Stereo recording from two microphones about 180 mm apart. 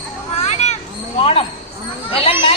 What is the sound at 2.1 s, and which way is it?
Speech, 30° left (ahead or behind).